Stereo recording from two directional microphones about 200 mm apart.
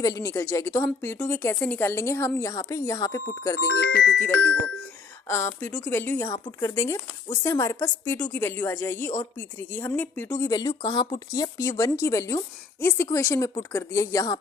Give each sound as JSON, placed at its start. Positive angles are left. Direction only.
{"t": 0.0, "sound": "speech", "side_deg": 15}